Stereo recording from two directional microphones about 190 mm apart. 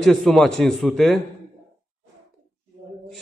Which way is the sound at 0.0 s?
Centre (ahead or behind).